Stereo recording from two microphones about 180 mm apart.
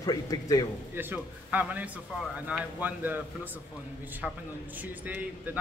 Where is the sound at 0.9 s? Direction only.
10° right (ahead or behind).